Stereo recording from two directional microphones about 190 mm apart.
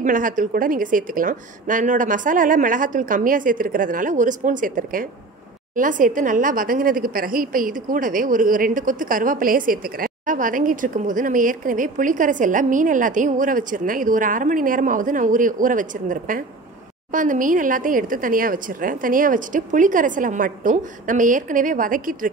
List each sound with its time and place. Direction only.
0.0 s a woman's voice: 45° right (ahead or behind)